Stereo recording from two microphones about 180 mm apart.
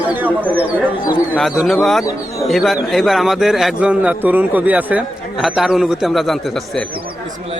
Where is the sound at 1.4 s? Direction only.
Centre (ahead or behind).